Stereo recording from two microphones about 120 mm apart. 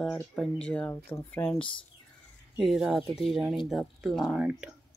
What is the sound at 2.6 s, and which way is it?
Speech, centre (ahead or behind).